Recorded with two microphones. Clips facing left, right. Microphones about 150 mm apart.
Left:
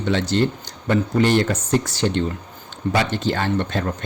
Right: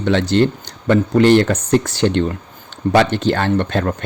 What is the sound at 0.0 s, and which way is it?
Speech, 65° right (ahead or behind).